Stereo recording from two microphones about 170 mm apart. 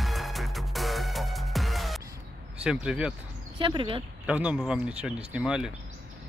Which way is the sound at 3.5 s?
30° right (ahead or behind).